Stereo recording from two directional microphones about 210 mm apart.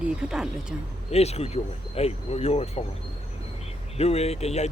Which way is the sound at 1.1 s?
30° left (ahead or behind).